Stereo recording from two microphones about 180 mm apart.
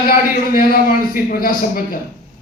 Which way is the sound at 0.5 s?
50° left (ahead or behind).